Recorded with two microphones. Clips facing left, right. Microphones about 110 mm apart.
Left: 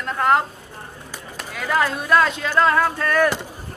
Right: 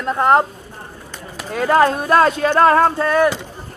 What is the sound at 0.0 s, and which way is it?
Speech, 35° right (ahead or behind).